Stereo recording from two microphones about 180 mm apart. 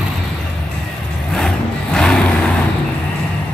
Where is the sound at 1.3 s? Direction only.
5° left (ahead or behind).